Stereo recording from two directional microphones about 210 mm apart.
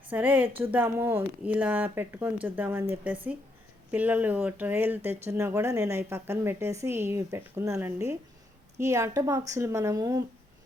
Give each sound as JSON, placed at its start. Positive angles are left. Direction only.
{"t": 0.1, "sound": "speech", "side_deg": -10}